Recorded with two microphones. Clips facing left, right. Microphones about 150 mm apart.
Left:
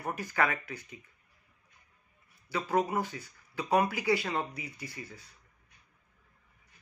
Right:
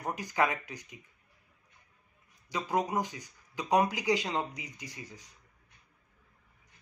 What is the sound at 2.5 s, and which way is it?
Speech, 15° right (ahead or behind).